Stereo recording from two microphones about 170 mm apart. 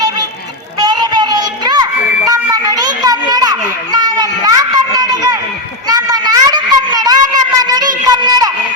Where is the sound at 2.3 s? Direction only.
20° right (ahead or behind).